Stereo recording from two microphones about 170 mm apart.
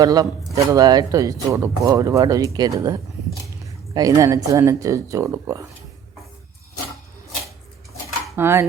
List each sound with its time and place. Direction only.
0.0 s speech: 20° right (ahead or behind)
8.4 s cutlery: 15° right (ahead or behind)